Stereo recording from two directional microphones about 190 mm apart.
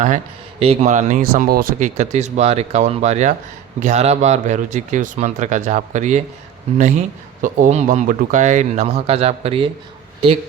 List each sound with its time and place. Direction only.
0.6 s speech: 35° right (ahead or behind)